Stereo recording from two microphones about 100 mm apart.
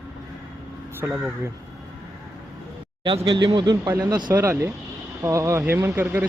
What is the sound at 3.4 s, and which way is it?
Speech, 45° right (ahead or behind).